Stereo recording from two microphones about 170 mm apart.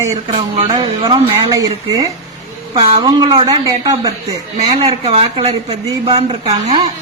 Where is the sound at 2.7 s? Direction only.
35° right (ahead or behind).